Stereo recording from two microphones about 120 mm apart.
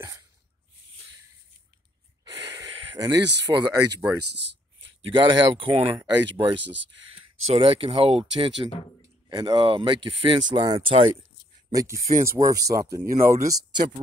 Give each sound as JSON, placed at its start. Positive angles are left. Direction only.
{"t": 2.3, "sound": "a sound", "side_deg": -30}
{"t": 5.1, "sound": "speech", "side_deg": -40}
{"t": 11.7, "sound": "speech", "side_deg": -25}